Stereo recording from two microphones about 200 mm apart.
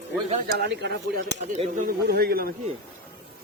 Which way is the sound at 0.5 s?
55° right (ahead or behind).